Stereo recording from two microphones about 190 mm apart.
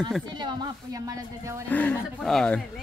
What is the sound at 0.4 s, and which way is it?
Speech, 25° right (ahead or behind).